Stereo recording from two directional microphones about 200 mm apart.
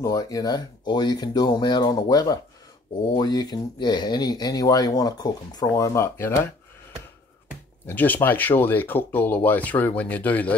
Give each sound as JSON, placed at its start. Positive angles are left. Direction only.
{"t": 0.0, "sound": "speech", "side_deg": 15}
{"t": 7.8, "sound": "speech", "side_deg": 10}